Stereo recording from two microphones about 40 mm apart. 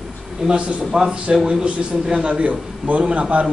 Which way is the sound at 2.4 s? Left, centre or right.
Right.